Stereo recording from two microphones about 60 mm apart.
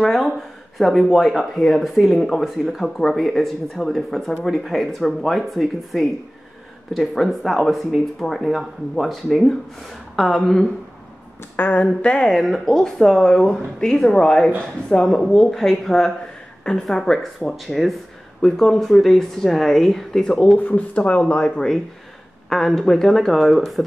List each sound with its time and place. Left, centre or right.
0.0 s speech: centre
11.5 s speech: left
11.8 s speech: centre
12.3 s speech: centre
20.5 s speech: left
22.5 s speech: centre